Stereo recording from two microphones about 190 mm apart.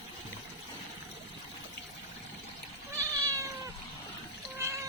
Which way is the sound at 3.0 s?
15° right (ahead or behind).